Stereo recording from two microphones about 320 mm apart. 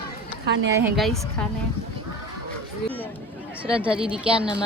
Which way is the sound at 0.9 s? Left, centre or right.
Centre.